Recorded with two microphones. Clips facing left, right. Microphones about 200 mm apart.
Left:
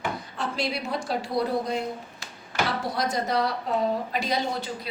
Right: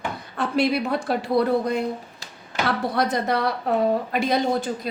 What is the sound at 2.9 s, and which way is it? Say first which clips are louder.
A woman's voice: right 2 dB; 60° right (ahead or behind).